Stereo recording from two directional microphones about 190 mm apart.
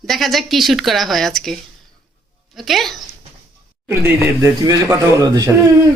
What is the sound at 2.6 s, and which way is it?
Speech, centre (ahead or behind).